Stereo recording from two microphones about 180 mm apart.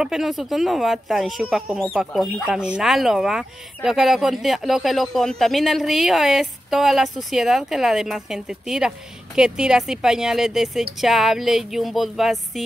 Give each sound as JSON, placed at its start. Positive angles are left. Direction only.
{"t": 0.0, "sound": "speech", "side_deg": 0}